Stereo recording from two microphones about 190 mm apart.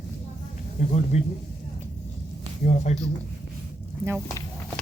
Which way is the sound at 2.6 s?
40° left (ahead or behind).